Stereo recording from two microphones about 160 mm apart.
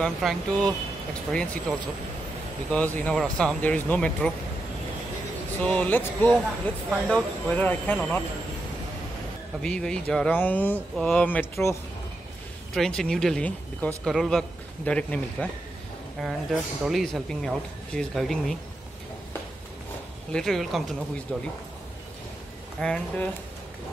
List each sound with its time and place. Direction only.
0.0 s speech: centre (ahead or behind)
5.6 s speech: 10° left (ahead or behind)
9.6 s speech: 5° left (ahead or behind)
12.7 s speech: 5° left (ahead or behind)
20.3 s speech: centre (ahead or behind)
22.8 s speech: 5° left (ahead or behind)